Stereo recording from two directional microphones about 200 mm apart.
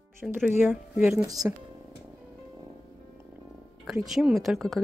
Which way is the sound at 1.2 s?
20° right (ahead or behind).